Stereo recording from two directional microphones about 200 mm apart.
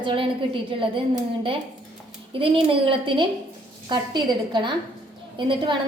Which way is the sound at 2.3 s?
25° right (ahead or behind).